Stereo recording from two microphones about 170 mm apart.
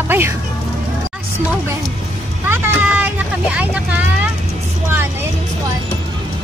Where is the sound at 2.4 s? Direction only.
15° right (ahead or behind).